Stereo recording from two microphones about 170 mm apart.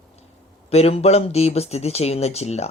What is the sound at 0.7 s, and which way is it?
Speech, 35° left (ahead or behind).